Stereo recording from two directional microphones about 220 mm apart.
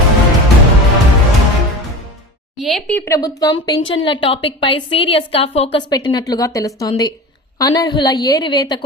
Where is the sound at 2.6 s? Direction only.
Centre (ahead or behind).